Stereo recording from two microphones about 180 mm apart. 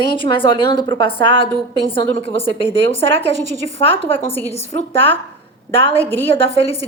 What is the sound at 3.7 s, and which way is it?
A woman's voice, 30° left (ahead or behind).